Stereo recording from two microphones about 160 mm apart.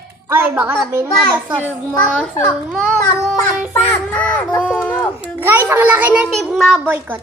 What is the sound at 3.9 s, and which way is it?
A child's voice, 10° left (ahead or behind).